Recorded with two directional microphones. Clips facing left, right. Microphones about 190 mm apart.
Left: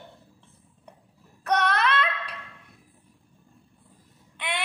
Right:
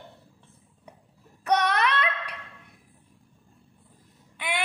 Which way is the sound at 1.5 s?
15° right (ahead or behind).